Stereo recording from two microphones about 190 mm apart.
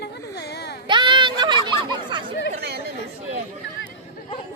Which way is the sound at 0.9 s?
25° right (ahead or behind).